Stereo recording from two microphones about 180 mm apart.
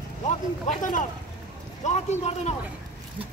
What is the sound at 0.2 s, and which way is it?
Speech, 40° left (ahead or behind).